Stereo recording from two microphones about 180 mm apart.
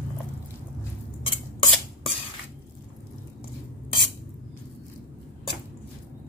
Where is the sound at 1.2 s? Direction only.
25° left (ahead or behind).